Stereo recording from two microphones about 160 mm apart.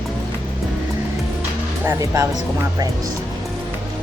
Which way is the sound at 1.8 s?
15° right (ahead or behind).